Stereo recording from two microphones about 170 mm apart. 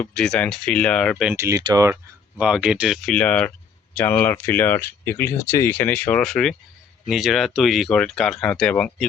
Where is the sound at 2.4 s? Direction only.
5° right (ahead or behind).